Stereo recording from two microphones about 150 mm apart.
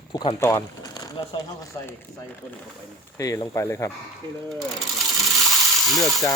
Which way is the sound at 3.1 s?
20° left (ahead or behind).